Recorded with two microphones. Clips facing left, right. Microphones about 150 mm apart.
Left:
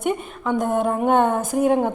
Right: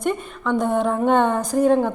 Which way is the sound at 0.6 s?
45° left (ahead or behind).